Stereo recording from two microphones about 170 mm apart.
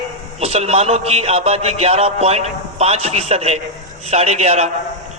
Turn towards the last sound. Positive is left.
turn(degrees=-40)  # may be behind; listen again after turning